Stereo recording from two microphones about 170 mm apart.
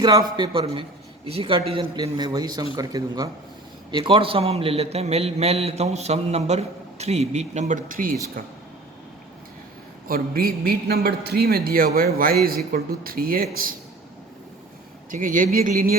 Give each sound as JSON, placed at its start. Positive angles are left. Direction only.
{"t": 0.0, "sound": "a man's voice", "side_deg": -25}
{"t": 10.1, "sound": "a man's voice", "side_deg": -60}
{"t": 15.1, "sound": "speech", "side_deg": -50}